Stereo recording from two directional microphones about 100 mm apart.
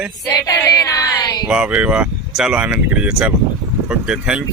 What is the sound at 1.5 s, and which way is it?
A man's voice, 10° right (ahead or behind).